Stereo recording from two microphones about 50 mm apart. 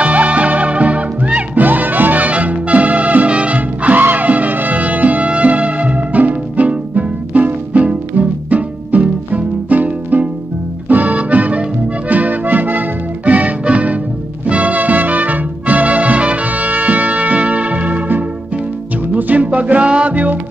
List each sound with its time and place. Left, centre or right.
0.0 s music: right
1.6 s music: right